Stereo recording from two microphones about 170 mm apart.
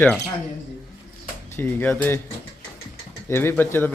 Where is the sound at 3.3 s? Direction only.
15° left (ahead or behind).